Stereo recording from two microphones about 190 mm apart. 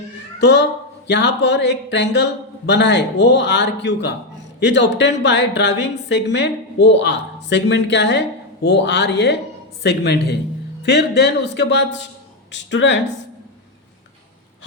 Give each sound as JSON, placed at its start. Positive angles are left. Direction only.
{"t": 0.3, "sound": "a woman's voice", "side_deg": 65}